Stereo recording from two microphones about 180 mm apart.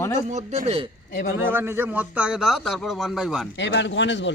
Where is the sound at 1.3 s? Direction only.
10° right (ahead or behind).